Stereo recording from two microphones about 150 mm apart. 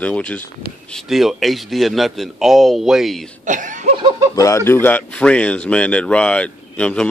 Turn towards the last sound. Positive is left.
turn(degrees=5)  # may be behind; listen again after turning